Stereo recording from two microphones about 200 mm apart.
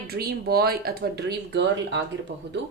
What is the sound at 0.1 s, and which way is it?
Speech, 50° right (ahead or behind).